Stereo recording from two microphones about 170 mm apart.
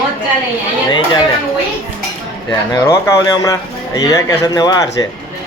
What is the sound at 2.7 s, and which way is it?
A man's voice, 20° left (ahead or behind).